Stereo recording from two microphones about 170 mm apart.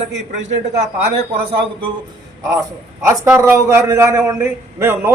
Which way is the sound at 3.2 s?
15° right (ahead or behind).